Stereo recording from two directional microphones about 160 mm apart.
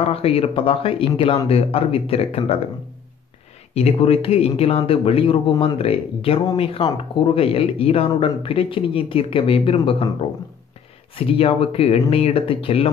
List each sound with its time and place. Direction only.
0.1 s speech: 40° left (ahead or behind)
3.7 s speech: 40° left (ahead or behind)
11.1 s speech: 35° left (ahead or behind)